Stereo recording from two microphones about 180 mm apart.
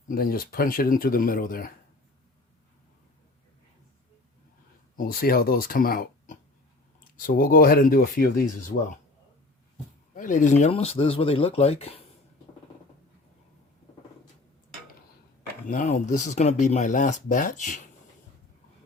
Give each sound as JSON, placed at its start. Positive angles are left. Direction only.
{"t": 0.1, "sound": "speech", "side_deg": 55}
{"t": 4.9, "sound": "speech", "side_deg": 55}
{"t": 10.2, "sound": "speech", "side_deg": 45}
{"t": 15.7, "sound": "speech", "side_deg": 45}